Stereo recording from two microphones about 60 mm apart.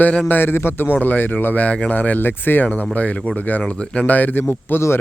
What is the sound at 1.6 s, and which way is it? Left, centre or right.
Speech, left.